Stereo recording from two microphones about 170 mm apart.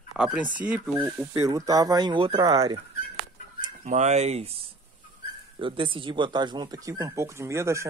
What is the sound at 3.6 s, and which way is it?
Speech, 50° right (ahead or behind).